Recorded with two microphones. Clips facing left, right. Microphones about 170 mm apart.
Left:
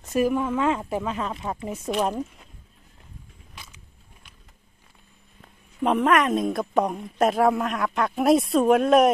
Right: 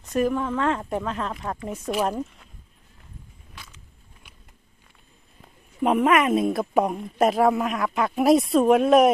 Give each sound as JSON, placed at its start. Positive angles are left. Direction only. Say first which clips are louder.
{"t": 0.1, "sound": "a woman's voice", "louder": "left 1 dB", "side_deg": 10}
{"t": 5.8, "sound": "a woman's voice", "louder": "right 1 dB", "side_deg": -5}